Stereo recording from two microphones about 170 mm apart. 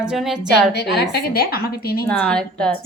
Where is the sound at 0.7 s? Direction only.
75° left (ahead or behind).